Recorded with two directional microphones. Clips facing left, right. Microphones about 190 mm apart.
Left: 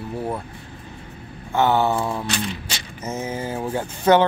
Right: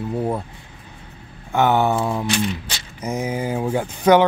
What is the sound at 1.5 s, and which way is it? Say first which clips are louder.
Speech: right 1 dB; 15° right (ahead or behind).